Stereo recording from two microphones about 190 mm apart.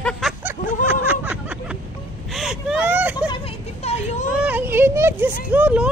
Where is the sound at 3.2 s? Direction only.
30° left (ahead or behind).